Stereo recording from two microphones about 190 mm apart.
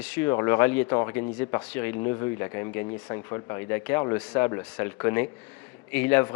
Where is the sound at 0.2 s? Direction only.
15° left (ahead or behind).